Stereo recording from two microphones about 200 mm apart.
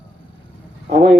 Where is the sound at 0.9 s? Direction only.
50° right (ahead or behind).